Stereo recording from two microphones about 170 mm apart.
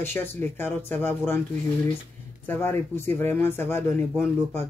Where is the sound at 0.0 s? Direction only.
10° left (ahead or behind).